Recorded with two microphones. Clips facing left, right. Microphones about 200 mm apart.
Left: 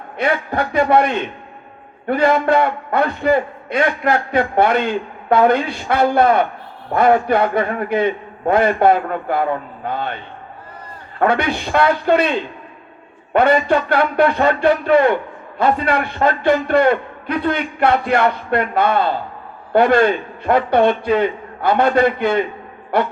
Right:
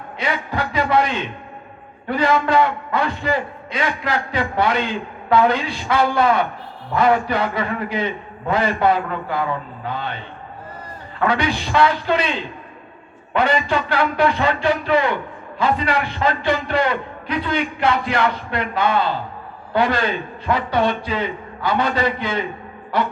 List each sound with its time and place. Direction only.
0.2 s a man's voice: 60° left (ahead or behind)
11.2 s a man's voice: 55° left (ahead or behind)
13.6 s a man's voice: 55° left (ahead or behind)